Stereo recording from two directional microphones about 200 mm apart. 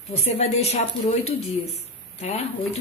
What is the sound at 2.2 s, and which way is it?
Speech, 35° left (ahead or behind).